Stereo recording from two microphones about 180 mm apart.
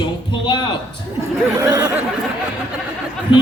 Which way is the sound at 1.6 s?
20° right (ahead or behind).